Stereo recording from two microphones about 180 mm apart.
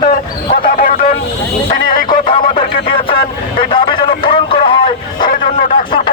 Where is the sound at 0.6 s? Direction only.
50° left (ahead or behind).